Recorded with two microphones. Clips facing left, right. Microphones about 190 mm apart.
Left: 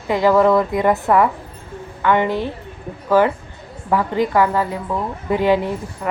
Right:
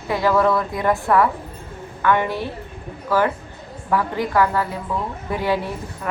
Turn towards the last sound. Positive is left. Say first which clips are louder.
# left 6 dB
turn(degrees=15)  # may be behind; listen again after turning